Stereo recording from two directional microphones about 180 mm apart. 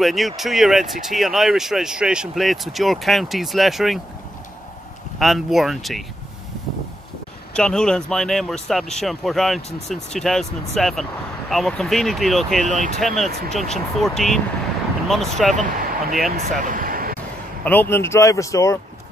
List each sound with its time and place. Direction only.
0.0 s speech: centre (ahead or behind)
5.2 s speech: centre (ahead or behind)
7.5 s speech: 5° left (ahead or behind)
12.6 s speech: 45° right (ahead or behind)
13.0 s speech: centre (ahead or behind)
15.5 s speech: 45° right (ahead or behind)
16.3 s a sound: 45° right (ahead or behind)
17.6 s speech: 10° left (ahead or behind)